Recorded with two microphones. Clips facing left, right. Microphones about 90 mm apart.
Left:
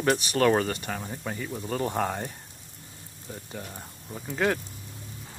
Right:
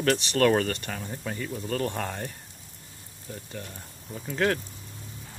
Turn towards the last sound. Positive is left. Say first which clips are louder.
# even
turn(degrees=5)  # may be behind; listen again after turning